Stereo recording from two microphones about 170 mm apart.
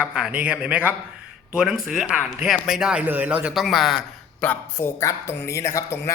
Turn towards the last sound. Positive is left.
turn(degrees=15)  # may be behind; listen again after turning